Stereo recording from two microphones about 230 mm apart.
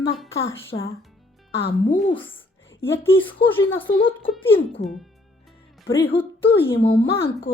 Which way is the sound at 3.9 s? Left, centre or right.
Left.